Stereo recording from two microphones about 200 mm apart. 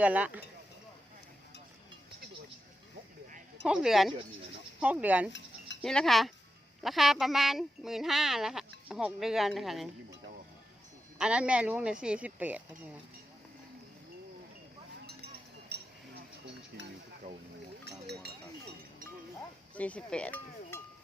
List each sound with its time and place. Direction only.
0.0 s speech: 5° right (ahead or behind)
3.7 s speech: 5° right (ahead or behind)
11.2 s speech: 5° right (ahead or behind)
15.7 s chink: 55° right (ahead or behind)
16.7 s a sound: 50° right (ahead or behind)
17.2 s a sound: 35° right (ahead or behind)
17.8 s goat: 55° right (ahead or behind)
19.7 s cowbell: 5° left (ahead or behind)